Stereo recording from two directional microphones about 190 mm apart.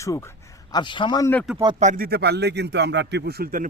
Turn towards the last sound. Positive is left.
turn(degrees=-50)  # may be behind; listen again after turning